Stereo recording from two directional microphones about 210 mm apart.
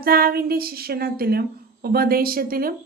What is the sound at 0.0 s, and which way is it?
A woman's voice, 45° right (ahead or behind).